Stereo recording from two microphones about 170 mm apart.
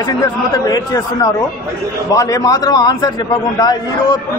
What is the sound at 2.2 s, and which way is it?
A man's voice, 20° left (ahead or behind).